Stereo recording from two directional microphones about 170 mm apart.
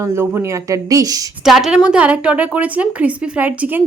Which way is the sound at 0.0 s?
15° right (ahead or behind).